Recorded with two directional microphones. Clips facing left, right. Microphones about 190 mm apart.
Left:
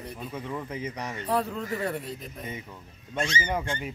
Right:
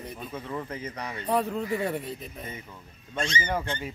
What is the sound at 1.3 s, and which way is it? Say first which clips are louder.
Speech: right 2 dB; 10° right (ahead or behind).